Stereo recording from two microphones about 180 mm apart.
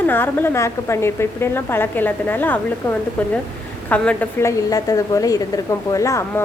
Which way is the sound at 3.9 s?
10° left (ahead or behind).